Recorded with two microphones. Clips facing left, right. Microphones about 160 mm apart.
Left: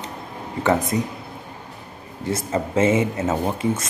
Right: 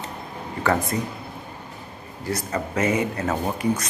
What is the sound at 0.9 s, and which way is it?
Speech, 15° left (ahead or behind).